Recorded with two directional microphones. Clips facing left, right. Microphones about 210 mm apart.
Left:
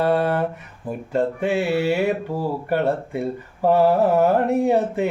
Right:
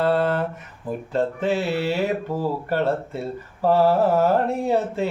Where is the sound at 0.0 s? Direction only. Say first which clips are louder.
Left 1 dB; 15° left (ahead or behind).